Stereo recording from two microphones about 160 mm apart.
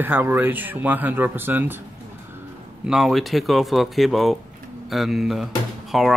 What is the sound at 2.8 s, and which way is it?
Speech, centre (ahead or behind).